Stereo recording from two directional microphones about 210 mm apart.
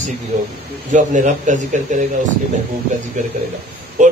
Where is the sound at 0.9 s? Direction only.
35° right (ahead or behind).